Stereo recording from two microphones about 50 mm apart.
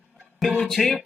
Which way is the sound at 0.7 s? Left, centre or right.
Centre.